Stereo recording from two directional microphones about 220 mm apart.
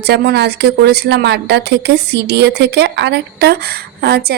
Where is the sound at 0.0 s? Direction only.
45° right (ahead or behind).